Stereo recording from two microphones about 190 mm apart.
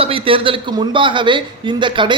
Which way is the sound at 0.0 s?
30° right (ahead or behind).